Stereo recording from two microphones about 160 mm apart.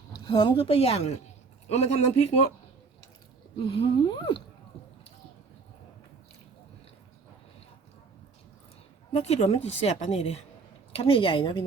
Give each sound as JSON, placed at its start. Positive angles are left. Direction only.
{"t": 0.3, "sound": "a woman's voice", "side_deg": 25}
{"t": 3.7, "sound": "a woman's voice", "side_deg": 30}
{"t": 9.1, "sound": "a woman's voice", "side_deg": 40}